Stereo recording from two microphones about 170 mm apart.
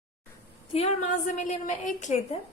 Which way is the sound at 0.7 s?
35° left (ahead or behind).